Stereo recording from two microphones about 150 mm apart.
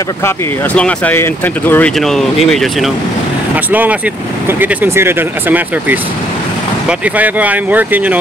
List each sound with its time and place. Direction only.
0.7 s speech: 10° left (ahead or behind)
2.0 s speech: centre (ahead or behind)
4.5 s speech: 15° right (ahead or behind)